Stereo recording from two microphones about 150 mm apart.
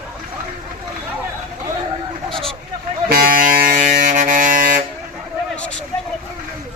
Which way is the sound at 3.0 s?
80° right.